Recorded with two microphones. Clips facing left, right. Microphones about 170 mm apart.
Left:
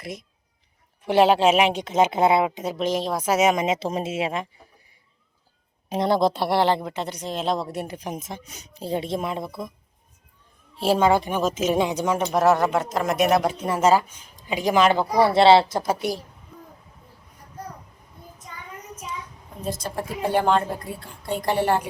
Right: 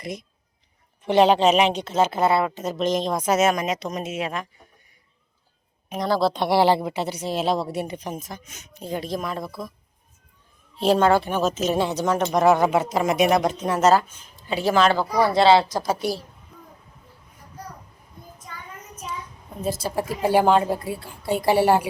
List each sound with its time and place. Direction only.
0.0 s a woman's voice: centre (ahead or behind)
3.5 s speech: 25° left (ahead or behind)
5.9 s speech: 25° left (ahead or behind)
6.3 s a woman's voice: 5° left (ahead or behind)
6.6 s a woman's voice: 10° right (ahead or behind)
7.9 s speech: 15° left (ahead or behind)
10.8 s speech: 10° left (ahead or behind); by 15.9 s 25° left (ahead or behind)
19.6 s a woman's voice: 5° right (ahead or behind)